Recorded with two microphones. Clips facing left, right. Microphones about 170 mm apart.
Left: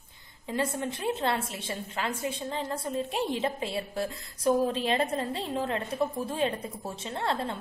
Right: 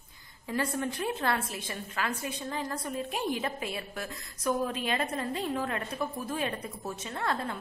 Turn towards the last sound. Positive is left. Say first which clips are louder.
# left 2 dB
turn(degrees=30)  # may be behind; listen again after turning